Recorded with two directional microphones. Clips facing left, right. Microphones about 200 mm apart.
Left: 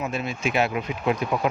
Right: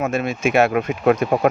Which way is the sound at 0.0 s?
50° right (ahead or behind).